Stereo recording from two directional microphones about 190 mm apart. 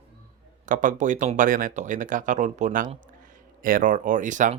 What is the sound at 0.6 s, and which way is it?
Speech, 45° right (ahead or behind).